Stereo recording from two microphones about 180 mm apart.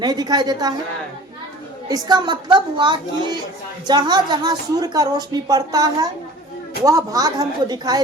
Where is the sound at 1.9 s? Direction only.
25° right (ahead or behind).